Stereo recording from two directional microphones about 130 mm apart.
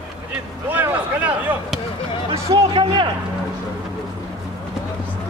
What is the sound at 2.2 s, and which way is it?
Speech, 40° right (ahead or behind).